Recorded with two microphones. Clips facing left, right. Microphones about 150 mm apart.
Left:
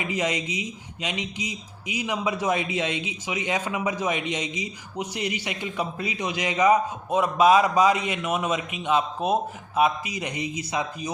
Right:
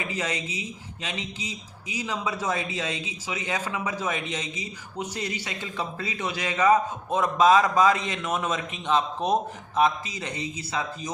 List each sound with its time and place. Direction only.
0.0 s speech: 20° left (ahead or behind)